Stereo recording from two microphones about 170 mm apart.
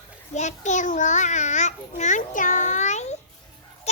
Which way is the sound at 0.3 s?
45° left (ahead or behind).